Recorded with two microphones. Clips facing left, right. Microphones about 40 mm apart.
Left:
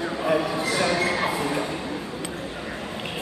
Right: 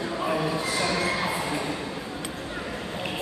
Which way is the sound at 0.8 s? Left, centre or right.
Left.